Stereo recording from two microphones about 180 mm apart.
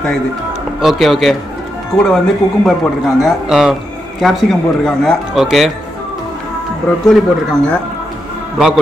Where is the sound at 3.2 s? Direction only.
Centre (ahead or behind).